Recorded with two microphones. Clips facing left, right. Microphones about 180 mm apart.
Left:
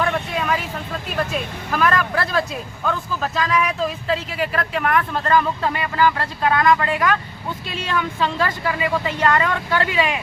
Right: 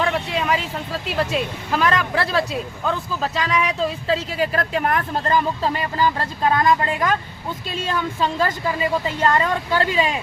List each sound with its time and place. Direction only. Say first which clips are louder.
0.3 s vehicle: right 2 dB; 25° right (ahead or behind)
1.3 s speech: right 2 dB; 25° right (ahead or behind)